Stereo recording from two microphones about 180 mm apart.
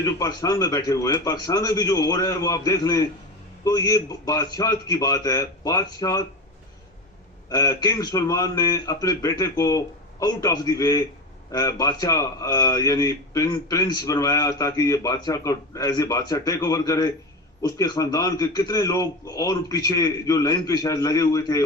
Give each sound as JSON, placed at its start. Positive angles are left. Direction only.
{"t": 0.0, "sound": "a man's voice", "side_deg": 20}
{"t": 7.5, "sound": "a man's voice", "side_deg": 20}